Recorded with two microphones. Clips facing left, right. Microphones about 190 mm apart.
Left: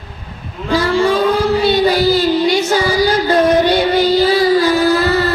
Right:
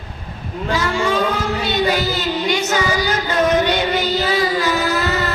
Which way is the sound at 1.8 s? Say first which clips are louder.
Left 7 dB; 35° left (ahead or behind).